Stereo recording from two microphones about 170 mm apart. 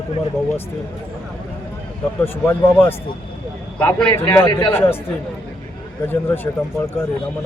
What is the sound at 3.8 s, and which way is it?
Speech, 10° left (ahead or behind).